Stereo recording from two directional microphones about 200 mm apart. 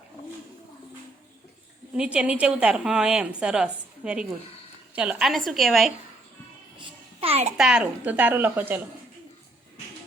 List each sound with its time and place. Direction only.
1.9 s a woman's voice: 5° right (ahead or behind)
6.8 s babbling: 30° right (ahead or behind)
7.5 s a woman's voice: 5° right (ahead or behind)